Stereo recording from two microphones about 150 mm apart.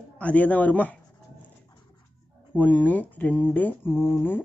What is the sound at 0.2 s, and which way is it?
Speech, 10° left (ahead or behind).